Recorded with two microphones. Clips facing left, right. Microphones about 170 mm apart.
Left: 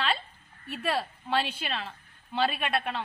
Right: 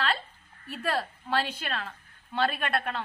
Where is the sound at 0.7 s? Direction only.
5° left (ahead or behind).